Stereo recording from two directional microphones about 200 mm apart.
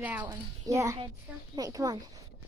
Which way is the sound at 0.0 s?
10° right (ahead or behind).